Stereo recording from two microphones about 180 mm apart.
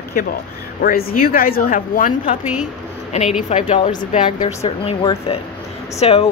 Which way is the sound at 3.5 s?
40° left (ahead or behind).